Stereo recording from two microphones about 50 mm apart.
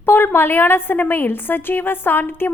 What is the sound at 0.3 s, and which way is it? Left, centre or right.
A woman's voice, left.